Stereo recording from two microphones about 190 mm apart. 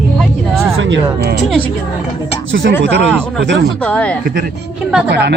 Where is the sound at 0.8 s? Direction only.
75° right (ahead or behind).